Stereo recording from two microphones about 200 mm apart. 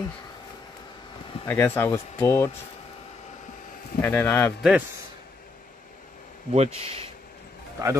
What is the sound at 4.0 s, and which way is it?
Speech, 10° left (ahead or behind).